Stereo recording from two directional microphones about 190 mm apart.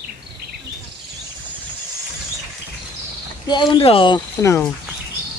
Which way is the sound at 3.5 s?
25° left (ahead or behind).